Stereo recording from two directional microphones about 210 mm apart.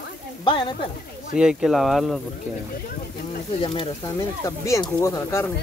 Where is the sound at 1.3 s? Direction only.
5° right (ahead or behind).